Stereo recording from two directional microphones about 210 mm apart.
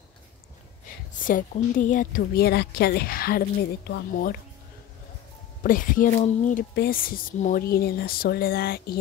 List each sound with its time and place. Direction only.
1.2 s a woman's voice: 40° left (ahead or behind)
5.6 s speech: 40° left (ahead or behind)
6.7 s a woman's voice: 45° left (ahead or behind)